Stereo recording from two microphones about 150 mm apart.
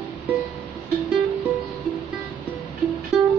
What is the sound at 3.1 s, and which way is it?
Music, 5° right (ahead or behind).